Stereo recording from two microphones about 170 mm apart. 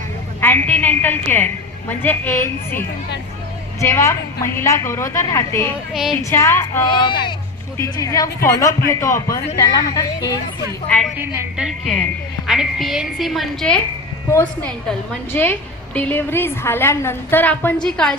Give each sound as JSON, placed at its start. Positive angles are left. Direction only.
{"t": 0.4, "sound": "a woman's voice", "side_deg": 10}
{"t": 5.9, "sound": "a woman's voice", "side_deg": 0}
{"t": 6.3, "sound": "a woman's voice", "side_deg": 15}
{"t": 6.8, "sound": "speech", "side_deg": 30}
{"t": 10.8, "sound": "a woman's voice", "side_deg": 10}
{"t": 11.2, "sound": "a woman's voice", "side_deg": -10}
{"t": 14.3, "sound": "a woman's voice", "side_deg": 15}